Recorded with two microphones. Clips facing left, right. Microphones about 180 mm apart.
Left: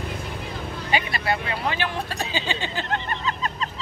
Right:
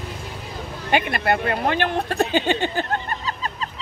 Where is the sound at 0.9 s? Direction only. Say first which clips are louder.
Right 5 dB; 55° right (ahead or behind).